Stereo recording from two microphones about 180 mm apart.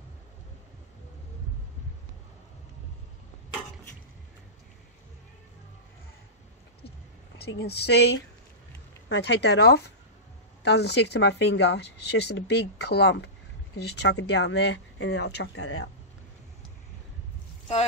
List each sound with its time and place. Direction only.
7.3 s speech: 65° left (ahead or behind); by 15.6 s 80° left